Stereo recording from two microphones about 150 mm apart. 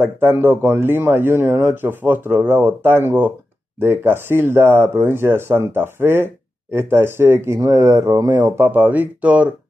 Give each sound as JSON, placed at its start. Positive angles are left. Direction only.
{"t": 0.0, "sound": "speech", "side_deg": -15}